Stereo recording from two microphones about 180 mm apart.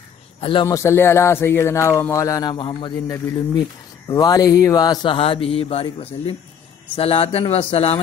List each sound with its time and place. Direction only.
0.4 s speech: 30° left (ahead or behind)